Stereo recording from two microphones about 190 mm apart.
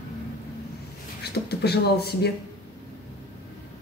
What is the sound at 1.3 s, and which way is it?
Speech, 60° left (ahead or behind).